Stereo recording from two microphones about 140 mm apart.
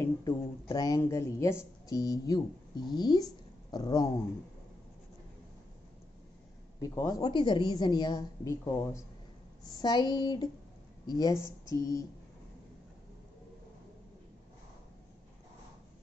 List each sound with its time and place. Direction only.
0.0 s a woman's voice: 25° left (ahead or behind)
6.8 s a woman's voice: 25° left (ahead or behind)